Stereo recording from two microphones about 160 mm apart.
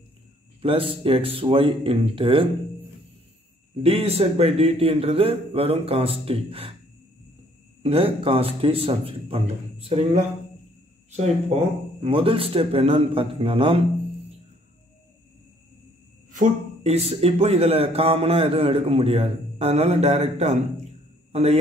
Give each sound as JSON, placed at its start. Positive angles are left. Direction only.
{"t": 0.6, "sound": "a man's voice", "side_deg": -35}
{"t": 3.8, "sound": "a man's voice", "side_deg": -40}
{"t": 7.8, "sound": "a man's voice", "side_deg": -35}
{"t": 12.0, "sound": "a man's voice", "side_deg": -35}
{"t": 16.3, "sound": "a man's voice", "side_deg": -50}